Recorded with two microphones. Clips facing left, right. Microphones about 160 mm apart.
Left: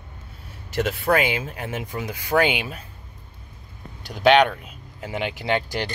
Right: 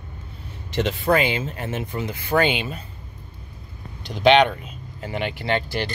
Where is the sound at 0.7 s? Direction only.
5° left (ahead or behind).